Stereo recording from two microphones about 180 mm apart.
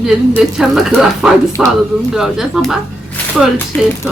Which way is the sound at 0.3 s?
5° right (ahead or behind).